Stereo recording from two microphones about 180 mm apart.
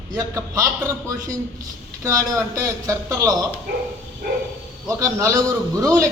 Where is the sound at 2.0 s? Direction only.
20° right (ahead or behind).